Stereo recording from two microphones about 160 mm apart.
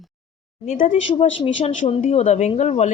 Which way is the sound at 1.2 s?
40° left (ahead or behind).